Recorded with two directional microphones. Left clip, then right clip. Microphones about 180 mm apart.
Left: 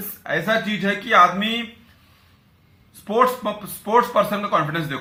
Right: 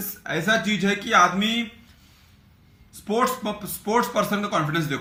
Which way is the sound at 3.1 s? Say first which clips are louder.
Left 5 dB; 15° right (ahead or behind).